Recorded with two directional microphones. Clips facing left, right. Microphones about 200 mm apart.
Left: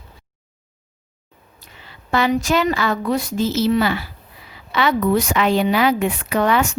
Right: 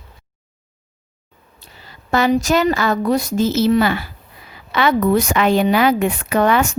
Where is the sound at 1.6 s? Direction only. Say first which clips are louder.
Right 1 dB; 40° right (ahead or behind).